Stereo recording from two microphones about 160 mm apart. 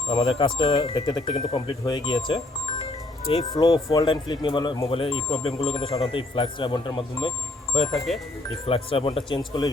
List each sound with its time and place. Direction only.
0.1 s speech: 35° left (ahead or behind)
3.6 s speech: 25° left (ahead or behind)